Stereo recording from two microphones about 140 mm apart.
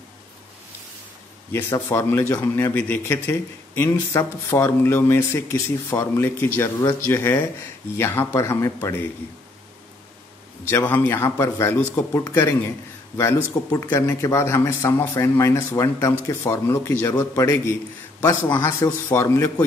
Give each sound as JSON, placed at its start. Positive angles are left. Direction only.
{"t": 1.5, "sound": "speech", "side_deg": 20}
{"t": 10.7, "sound": "speech", "side_deg": 15}
{"t": 13.7, "sound": "speech", "side_deg": 20}